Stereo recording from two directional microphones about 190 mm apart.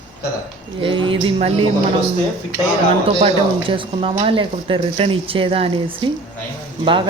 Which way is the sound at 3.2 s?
30° right (ahead or behind).